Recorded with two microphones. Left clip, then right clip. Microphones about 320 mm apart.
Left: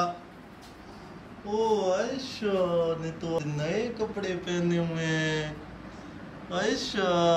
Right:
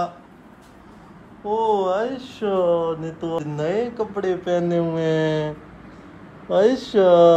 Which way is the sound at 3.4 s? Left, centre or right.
Centre.